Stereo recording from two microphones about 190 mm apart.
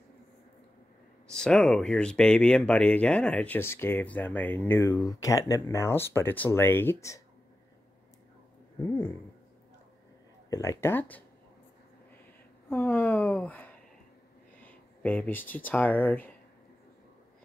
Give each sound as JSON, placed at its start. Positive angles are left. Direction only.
{"t": 1.3, "sound": "speech", "side_deg": 5}
{"t": 10.5, "sound": "speech", "side_deg": 15}
{"t": 12.6, "sound": "a sound", "side_deg": 10}
{"t": 14.6, "sound": "speech", "side_deg": 10}